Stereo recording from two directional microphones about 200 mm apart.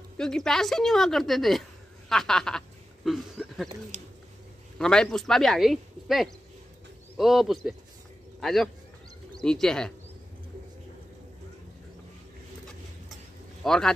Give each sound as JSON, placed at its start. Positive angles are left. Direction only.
{"t": 0.2, "sound": "speech", "side_deg": 5}
{"t": 3.9, "sound": "speech", "side_deg": -35}
{"t": 4.7, "sound": "speech", "side_deg": 5}
{"t": 13.7, "sound": "speech", "side_deg": 0}